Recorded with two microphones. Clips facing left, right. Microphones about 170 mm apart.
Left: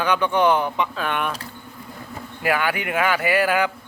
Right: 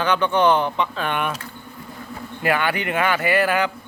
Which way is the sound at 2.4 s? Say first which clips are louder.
Right 1 dB; 5° left (ahead or behind).